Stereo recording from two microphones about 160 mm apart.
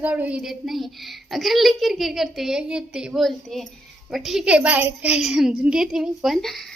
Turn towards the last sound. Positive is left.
turn(degrees=0)  # may be behind; listen again after turning